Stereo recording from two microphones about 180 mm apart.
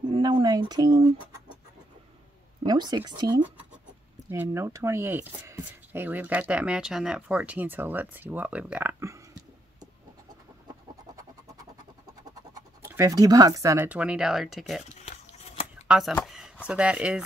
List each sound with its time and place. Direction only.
0.1 s speech: 25° right (ahead or behind)
2.6 s speech: 25° right (ahead or behind)
12.8 s speech: 15° right (ahead or behind)
15.9 s speech: centre (ahead or behind)
16.3 s a sound: 5° right (ahead or behind)
16.6 s speech: 5° right (ahead or behind)